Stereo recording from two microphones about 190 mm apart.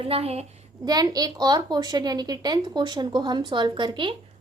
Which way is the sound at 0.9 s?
20° right (ahead or behind).